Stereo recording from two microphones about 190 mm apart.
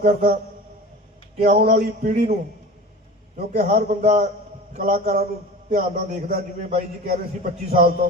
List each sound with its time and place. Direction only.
0.0 s a man's voice: 50° right (ahead or behind)
1.5 s a man's voice: 55° right (ahead or behind)
2.0 s a man's voice: 35° right (ahead or behind)
3.5 s a man's voice: 45° right (ahead or behind)